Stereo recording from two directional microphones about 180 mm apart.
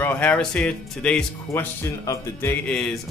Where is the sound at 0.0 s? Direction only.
5° left (ahead or behind).